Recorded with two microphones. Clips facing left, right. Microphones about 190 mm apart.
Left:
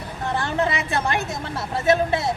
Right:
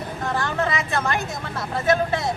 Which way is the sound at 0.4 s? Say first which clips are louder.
Left 1 dB; 30° left (ahead or behind).